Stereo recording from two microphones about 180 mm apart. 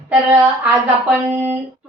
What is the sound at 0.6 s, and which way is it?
Speech, 10° right (ahead or behind).